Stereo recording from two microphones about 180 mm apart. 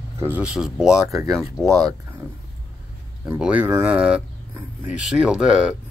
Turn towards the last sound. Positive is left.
turn(degrees=-5)  # may be behind; listen again after turning